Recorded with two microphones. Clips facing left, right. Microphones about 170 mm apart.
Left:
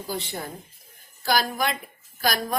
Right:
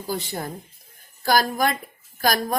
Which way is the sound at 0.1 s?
45° right (ahead or behind).